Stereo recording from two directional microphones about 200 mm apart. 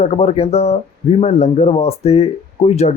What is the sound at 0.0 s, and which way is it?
Speech, 30° left (ahead or behind).